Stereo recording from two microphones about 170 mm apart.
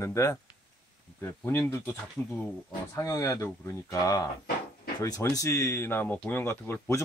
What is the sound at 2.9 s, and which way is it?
Speech, 20° left (ahead or behind).